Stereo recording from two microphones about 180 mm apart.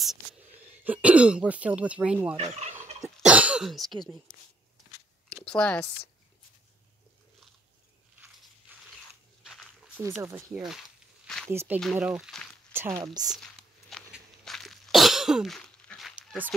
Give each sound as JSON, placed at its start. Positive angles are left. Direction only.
{"t": 0.8, "sound": "speech", "side_deg": -10}
{"t": 2.3, "sound": "fowl", "side_deg": -35}
{"t": 3.2, "sound": "cough", "side_deg": -5}
{"t": 5.3, "sound": "speech", "side_deg": 5}
{"t": 8.7, "sound": "biting", "side_deg": -10}
{"t": 9.4, "sound": "walk", "side_deg": -5}
{"t": 10.2, "sound": "speech", "side_deg": -10}
{"t": 11.2, "sound": "a sound", "side_deg": 5}
{"t": 11.5, "sound": "speech", "side_deg": -10}
{"t": 12.7, "sound": "speech", "side_deg": -15}
{"t": 13.3, "sound": "sneeze", "side_deg": 0}
{"t": 16.2, "sound": "dog", "side_deg": -5}